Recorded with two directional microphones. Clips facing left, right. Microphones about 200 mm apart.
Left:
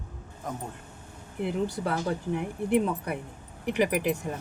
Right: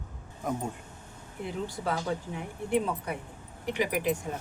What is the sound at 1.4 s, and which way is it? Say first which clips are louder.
Speech: left 5 dB; 65° left (ahead or behind).